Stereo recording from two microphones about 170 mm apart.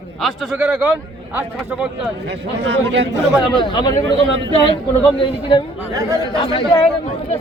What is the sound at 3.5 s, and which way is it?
Speech, 25° left (ahead or behind).